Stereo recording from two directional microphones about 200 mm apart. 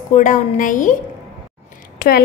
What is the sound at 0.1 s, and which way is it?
Speech, 40° left (ahead or behind).